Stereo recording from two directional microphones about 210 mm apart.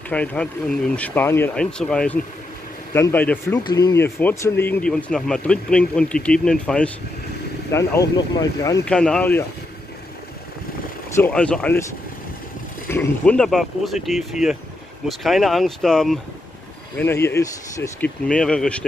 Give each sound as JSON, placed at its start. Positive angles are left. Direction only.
{"t": 0.1, "sound": "speech", "side_deg": 5}
{"t": 7.7, "sound": "speech", "side_deg": 15}
{"t": 8.8, "sound": "speech", "side_deg": 5}
{"t": 11.1, "sound": "speech", "side_deg": 5}
{"t": 12.8, "sound": "speech", "side_deg": 10}